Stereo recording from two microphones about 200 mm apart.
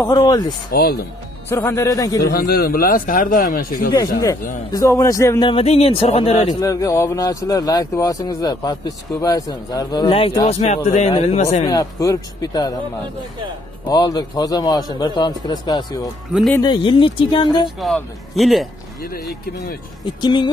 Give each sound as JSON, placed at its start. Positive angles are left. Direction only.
{"t": 0.0, "sound": "speech", "side_deg": 20}
{"t": 0.7, "sound": "a man's voice", "side_deg": 50}
{"t": 1.5, "sound": "speech", "side_deg": 15}
{"t": 2.2, "sound": "a man's voice", "side_deg": 50}
{"t": 4.2, "sound": "speech", "side_deg": 20}
{"t": 6.6, "sound": "speech", "side_deg": 15}
{"t": 11.6, "sound": "speech", "side_deg": 20}
{"t": 13.8, "sound": "speech", "side_deg": 20}
{"t": 17.7, "sound": "a man's voice", "side_deg": 0}
{"t": 20.2, "sound": "speech", "side_deg": 20}